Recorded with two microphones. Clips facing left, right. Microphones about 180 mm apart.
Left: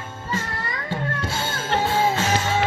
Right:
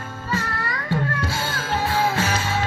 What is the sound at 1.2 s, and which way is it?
Music, 25° left (ahead or behind).